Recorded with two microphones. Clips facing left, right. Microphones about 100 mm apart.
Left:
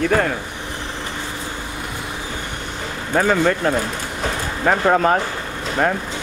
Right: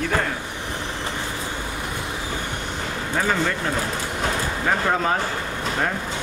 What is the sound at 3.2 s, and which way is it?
Speech, 55° left (ahead or behind).